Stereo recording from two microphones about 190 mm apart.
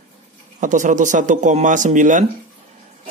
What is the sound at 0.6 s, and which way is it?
Speech, 40° right (ahead or behind).